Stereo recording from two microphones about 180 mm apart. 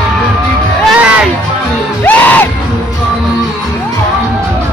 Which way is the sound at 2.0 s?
10° left (ahead or behind).